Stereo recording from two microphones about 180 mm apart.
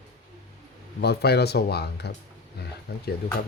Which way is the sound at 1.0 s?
65° left (ahead or behind).